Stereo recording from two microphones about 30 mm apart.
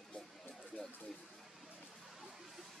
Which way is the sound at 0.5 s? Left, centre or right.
Left.